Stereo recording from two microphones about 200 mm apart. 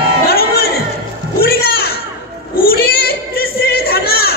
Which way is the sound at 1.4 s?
50° left (ahead or behind).